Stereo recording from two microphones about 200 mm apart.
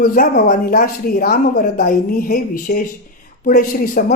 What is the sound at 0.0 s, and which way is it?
A woman's voice, 45° left (ahead or behind).